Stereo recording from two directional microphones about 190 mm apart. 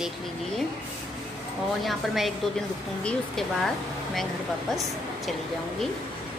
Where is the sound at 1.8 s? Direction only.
Centre (ahead or behind).